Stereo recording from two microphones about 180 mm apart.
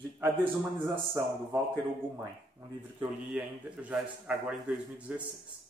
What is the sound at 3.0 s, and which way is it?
A man's voice, 10° right (ahead or behind).